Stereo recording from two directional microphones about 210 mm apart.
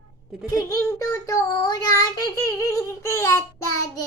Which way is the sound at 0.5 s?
15° left (ahead or behind).